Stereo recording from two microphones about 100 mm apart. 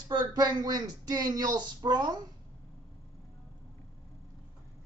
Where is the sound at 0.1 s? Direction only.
40° right (ahead or behind).